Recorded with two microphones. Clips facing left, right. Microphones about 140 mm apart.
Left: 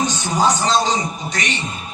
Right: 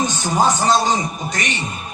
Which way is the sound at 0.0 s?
50° right (ahead or behind).